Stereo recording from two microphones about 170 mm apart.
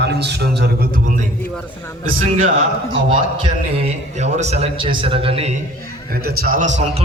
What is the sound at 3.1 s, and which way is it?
A man's voice, 35° right (ahead or behind).